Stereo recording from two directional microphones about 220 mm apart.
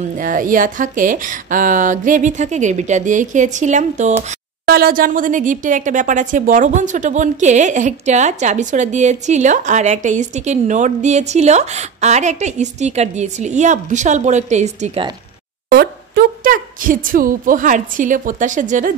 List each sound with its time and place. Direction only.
0.2 s a woman's voice: 35° right (ahead or behind)
15.7 s a woman's voice: 45° right (ahead or behind)